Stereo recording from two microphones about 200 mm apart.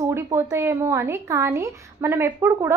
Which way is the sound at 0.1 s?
15° right (ahead or behind).